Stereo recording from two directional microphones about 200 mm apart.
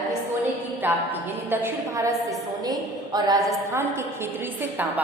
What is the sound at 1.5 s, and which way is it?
A woman's voice, 10° right (ahead or behind).